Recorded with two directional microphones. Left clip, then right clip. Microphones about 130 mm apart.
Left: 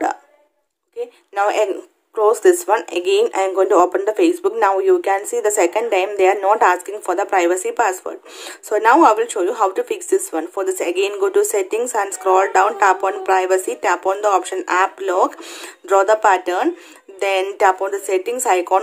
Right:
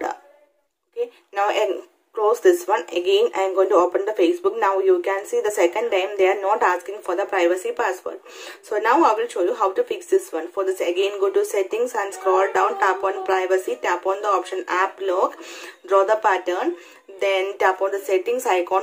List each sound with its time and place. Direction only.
0.9 s a woman's voice: 30° left (ahead or behind)